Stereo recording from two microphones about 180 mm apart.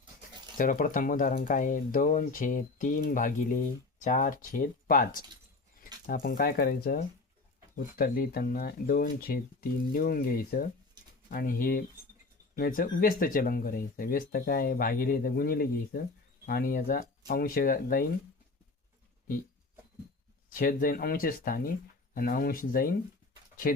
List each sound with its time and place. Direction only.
0.5 s speech: 50° left (ahead or behind)
20.5 s speech: 50° left (ahead or behind)